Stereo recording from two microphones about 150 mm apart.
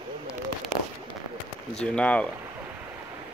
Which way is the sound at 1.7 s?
5° left (ahead or behind).